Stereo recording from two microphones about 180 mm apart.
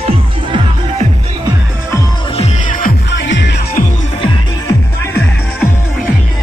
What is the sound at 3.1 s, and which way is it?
Music, 80° left.